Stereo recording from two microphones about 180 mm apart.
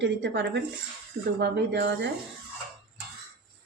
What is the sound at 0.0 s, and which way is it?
Speech, 75° right (ahead or behind).